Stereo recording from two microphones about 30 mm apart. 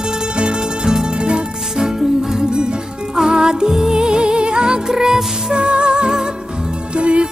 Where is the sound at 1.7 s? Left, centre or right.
Centre.